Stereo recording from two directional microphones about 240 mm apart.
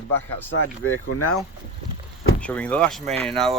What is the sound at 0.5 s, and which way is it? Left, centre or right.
Speech, left.